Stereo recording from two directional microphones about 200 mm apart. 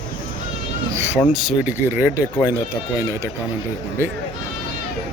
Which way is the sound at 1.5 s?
10° right (ahead or behind).